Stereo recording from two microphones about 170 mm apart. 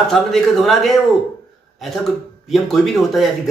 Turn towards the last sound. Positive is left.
turn(degrees=0)  # may be behind; listen again after turning